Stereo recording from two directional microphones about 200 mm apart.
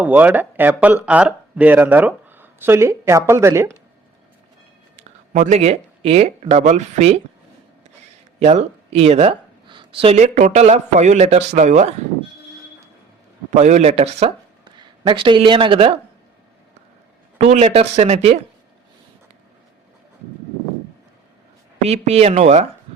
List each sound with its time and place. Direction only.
0.0 s speech: 10° right (ahead or behind)
4.9 s speech: 40° right (ahead or behind)
8.4 s speech: 35° right (ahead or behind)
13.5 s a man's voice: 35° right (ahead or behind)
17.3 s a man's voice: 35° right (ahead or behind)
21.8 s a man's voice: 35° right (ahead or behind)